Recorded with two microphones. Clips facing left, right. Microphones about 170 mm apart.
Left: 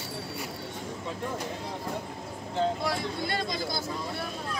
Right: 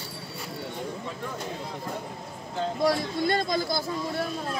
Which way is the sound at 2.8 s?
40° right (ahead or behind).